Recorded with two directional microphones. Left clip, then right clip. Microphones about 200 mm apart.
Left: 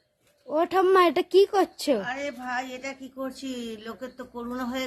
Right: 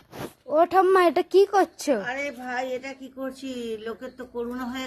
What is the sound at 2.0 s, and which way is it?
Speech, 15° left (ahead or behind).